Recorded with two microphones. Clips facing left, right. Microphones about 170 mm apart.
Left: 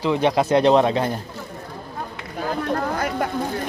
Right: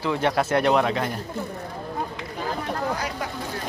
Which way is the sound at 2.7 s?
50° left (ahead or behind).